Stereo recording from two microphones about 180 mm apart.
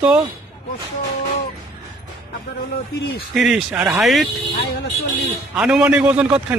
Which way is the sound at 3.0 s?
70° left (ahead or behind).